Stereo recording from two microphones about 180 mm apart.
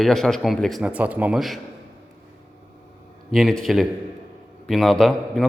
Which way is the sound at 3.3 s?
Centre (ahead or behind).